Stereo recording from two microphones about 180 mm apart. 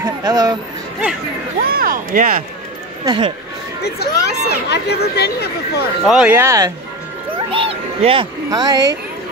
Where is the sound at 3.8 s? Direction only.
65° left (ahead or behind).